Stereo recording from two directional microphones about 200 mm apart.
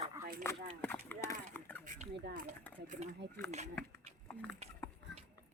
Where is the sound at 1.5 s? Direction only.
10° left (ahead or behind).